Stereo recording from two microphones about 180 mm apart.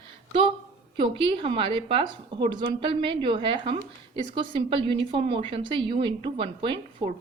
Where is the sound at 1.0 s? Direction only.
30° right (ahead or behind).